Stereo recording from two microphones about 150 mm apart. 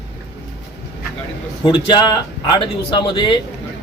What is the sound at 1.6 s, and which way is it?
Speech, 30° left (ahead or behind).